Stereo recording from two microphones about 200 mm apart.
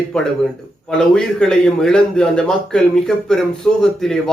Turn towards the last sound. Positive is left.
turn(degrees=0)  # may be behind; listen again after turning